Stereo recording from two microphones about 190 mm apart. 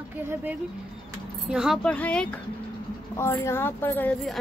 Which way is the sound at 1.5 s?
5° right (ahead or behind).